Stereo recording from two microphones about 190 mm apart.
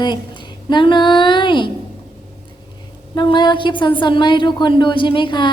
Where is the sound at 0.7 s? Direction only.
25° left (ahead or behind).